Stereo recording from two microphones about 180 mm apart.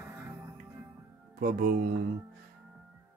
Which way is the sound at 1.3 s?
55° right (ahead or behind).